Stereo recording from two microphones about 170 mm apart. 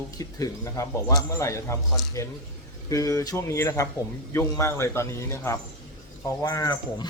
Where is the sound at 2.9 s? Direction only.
20° left (ahead or behind).